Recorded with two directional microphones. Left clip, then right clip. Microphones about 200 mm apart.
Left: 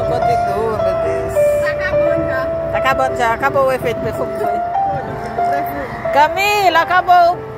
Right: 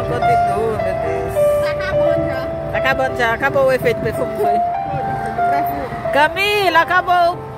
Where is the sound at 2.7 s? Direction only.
20° right (ahead or behind).